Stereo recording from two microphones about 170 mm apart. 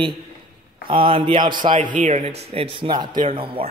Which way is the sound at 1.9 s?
45° right (ahead or behind).